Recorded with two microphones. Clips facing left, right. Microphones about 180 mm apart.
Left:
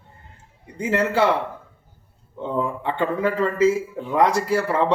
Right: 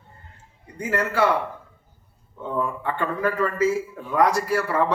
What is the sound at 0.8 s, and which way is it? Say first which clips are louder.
Speech: left 3 dB; 25° left (ahead or behind).